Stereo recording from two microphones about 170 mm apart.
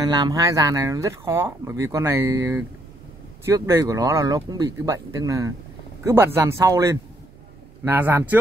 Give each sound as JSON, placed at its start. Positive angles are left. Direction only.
{"t": 0.0, "sound": "speech", "side_deg": -25}